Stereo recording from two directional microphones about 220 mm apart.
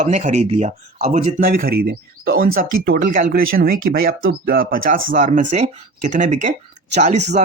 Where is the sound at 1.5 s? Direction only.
45° right (ahead or behind).